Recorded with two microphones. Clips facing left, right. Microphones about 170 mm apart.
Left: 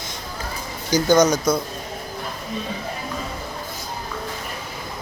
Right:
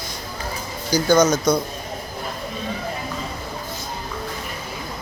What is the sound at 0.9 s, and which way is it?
Speech, 15° left (ahead or behind).